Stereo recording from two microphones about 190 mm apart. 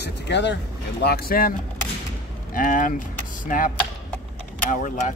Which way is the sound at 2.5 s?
45° left (ahead or behind).